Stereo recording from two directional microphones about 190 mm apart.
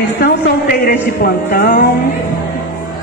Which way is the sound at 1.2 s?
55° left (ahead or behind).